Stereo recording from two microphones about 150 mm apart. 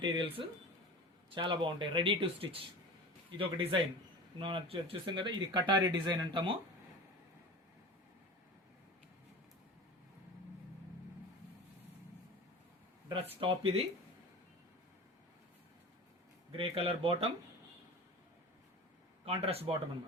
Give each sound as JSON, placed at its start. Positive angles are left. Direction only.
{"t": 0.0, "sound": "speech", "side_deg": -35}
{"t": 13.4, "sound": "speech", "side_deg": -40}
{"t": 16.5, "sound": "speech", "side_deg": -40}
{"t": 19.2, "sound": "speech", "side_deg": -40}